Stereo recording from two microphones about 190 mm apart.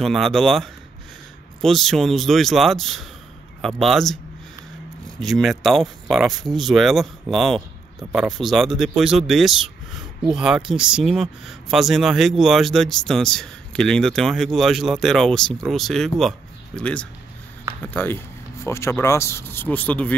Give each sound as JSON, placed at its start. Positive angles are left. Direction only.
{"t": 0.0, "sound": "speech", "side_deg": 0}
{"t": 5.2, "sound": "speech", "side_deg": 0}